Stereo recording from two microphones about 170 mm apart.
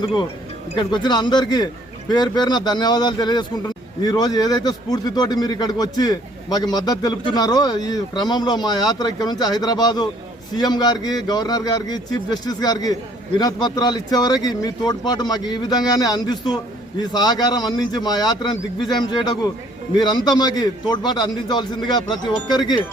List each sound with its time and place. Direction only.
0.0 s a man's voice: 25° left (ahead or behind)
20.0 s a man's voice: 25° left (ahead or behind)